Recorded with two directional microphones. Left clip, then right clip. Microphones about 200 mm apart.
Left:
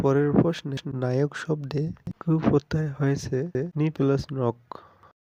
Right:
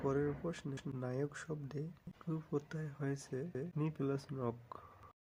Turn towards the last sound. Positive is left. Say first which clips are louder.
# left 14 dB
turn(degrees=40)  # may be behind; listen again after turning